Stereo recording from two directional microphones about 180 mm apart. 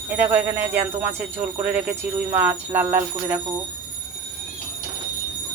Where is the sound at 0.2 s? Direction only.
10° right (ahead or behind).